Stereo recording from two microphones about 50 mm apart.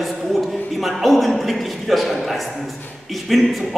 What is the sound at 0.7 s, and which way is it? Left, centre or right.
A man's voice, centre.